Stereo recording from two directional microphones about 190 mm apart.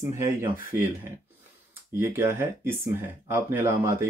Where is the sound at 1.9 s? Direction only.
10° right (ahead or behind).